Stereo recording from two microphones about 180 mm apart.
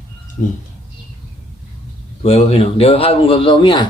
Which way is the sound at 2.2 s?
35° left (ahead or behind).